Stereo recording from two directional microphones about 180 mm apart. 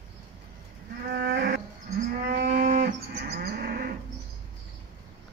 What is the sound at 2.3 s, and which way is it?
Cattle, 50° right (ahead or behind).